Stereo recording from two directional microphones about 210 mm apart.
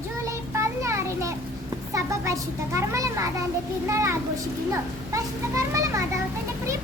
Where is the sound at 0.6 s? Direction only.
15° right (ahead or behind).